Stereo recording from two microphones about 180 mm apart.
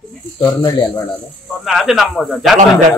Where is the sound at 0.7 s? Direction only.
25° left (ahead or behind).